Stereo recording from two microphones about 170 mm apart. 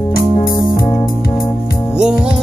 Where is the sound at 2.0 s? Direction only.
5° right (ahead or behind).